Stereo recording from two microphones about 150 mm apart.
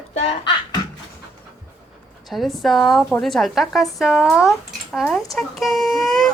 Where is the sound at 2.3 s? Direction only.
Centre (ahead or behind).